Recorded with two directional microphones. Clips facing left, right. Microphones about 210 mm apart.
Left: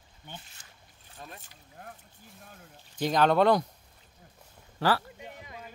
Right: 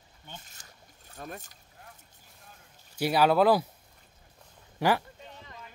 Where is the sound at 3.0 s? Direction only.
10° right (ahead or behind).